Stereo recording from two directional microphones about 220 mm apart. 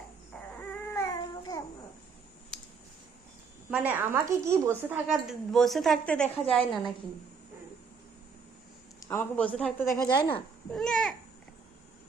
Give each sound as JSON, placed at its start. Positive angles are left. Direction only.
{"t": 0.5, "sound": "baby cry", "side_deg": 5}
{"t": 1.0, "sound": "babbling", "side_deg": 15}
{"t": 3.7, "sound": "a woman's voice", "side_deg": -10}
{"t": 9.0, "sound": "a man's voice", "side_deg": 5}
{"t": 10.0, "sound": "speech", "side_deg": 20}
{"t": 10.7, "sound": "a woman's voice", "side_deg": 0}